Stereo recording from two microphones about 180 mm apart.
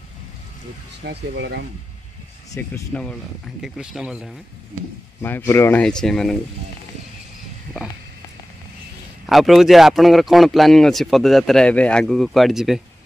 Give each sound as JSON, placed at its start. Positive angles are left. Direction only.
{"t": 1.0, "sound": "speech", "side_deg": -70}
{"t": 2.5, "sound": "speech", "side_deg": 10}
{"t": 3.6, "sound": "speech", "side_deg": -5}
{"t": 5.2, "sound": "speech", "side_deg": 15}
{"t": 9.2, "sound": "speech", "side_deg": 0}